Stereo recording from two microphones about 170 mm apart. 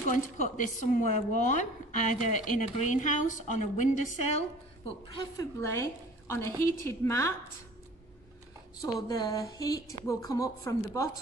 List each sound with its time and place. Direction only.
0.1 s speech: 50° left (ahead or behind)
4.8 s a woman's voice: 25° left (ahead or behind)
8.8 s speech: 20° left (ahead or behind)